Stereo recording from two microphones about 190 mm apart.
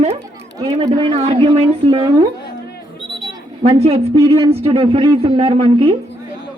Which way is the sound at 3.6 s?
30° right (ahead or behind).